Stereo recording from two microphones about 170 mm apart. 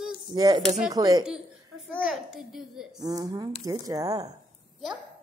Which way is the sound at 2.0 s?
Centre (ahead or behind).